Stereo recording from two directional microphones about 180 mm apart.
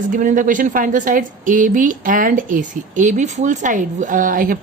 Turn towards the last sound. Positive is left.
turn(degrees=-50)  # may be behind; listen again after turning